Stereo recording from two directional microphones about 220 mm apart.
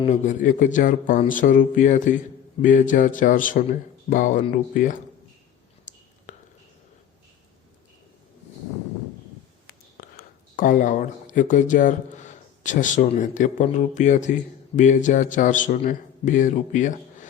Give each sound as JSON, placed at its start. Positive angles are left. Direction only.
{"t": 0.0, "sound": "speech", "side_deg": 35}
{"t": 5.9, "sound": "whispering", "side_deg": 35}
{"t": 6.3, "sound": "a sound", "side_deg": 35}
{"t": 10.2, "sound": "speech", "side_deg": 40}